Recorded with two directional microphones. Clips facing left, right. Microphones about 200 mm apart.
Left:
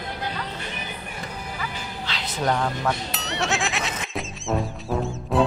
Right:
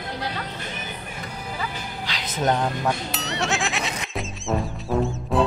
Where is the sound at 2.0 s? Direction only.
15° right (ahead or behind).